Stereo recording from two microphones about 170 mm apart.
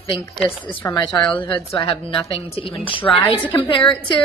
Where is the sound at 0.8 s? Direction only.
25° left (ahead or behind).